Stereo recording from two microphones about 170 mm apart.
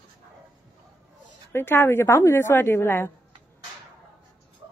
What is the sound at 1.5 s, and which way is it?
A woman's voice, 15° left (ahead or behind).